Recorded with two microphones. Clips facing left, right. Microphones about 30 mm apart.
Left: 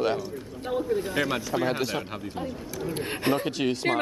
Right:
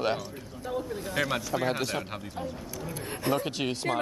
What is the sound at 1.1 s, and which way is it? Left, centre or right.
Speech, centre.